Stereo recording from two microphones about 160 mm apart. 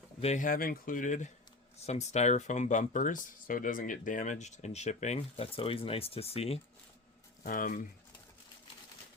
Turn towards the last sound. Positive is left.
turn(degrees=55)  # may be behind; listen again after turning